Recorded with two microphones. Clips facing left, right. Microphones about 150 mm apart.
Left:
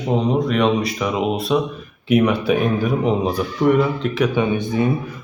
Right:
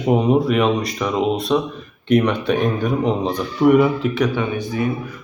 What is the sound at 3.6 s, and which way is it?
Speech, 5° right (ahead or behind).